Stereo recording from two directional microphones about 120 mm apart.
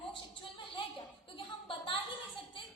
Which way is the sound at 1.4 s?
45° left (ahead or behind).